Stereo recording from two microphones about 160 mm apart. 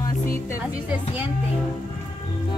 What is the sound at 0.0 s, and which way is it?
Music, 20° left (ahead or behind).